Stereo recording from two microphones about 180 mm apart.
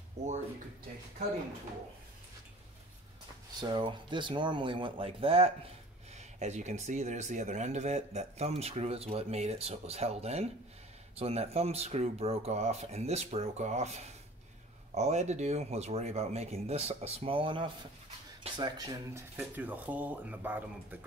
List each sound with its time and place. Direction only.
0.2 s speech: 40° right (ahead or behind)
3.5 s speech: 25° right (ahead or behind)
19.3 s speech: 10° right (ahead or behind)